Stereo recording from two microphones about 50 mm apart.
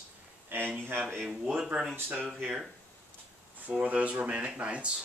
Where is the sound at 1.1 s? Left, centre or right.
Centre.